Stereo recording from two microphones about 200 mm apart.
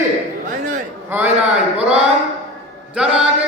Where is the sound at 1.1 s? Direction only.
10° right (ahead or behind).